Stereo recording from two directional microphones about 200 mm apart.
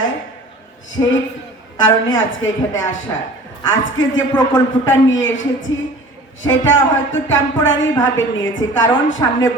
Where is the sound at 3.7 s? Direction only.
70° left (ahead or behind).